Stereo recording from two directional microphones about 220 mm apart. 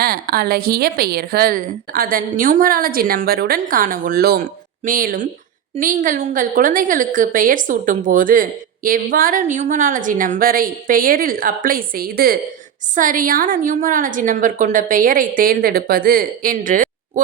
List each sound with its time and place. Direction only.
0.0 s a woman's voice: 45° right (ahead or behind)